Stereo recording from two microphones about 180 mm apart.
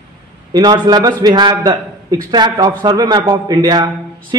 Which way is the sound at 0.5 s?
20° right (ahead or behind).